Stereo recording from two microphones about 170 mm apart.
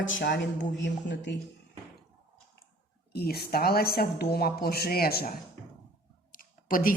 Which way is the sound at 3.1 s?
70° left (ahead or behind).